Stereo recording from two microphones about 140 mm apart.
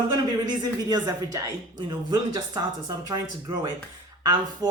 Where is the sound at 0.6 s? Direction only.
30° right (ahead or behind).